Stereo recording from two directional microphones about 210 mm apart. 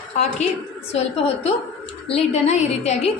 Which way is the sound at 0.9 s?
30° left (ahead or behind).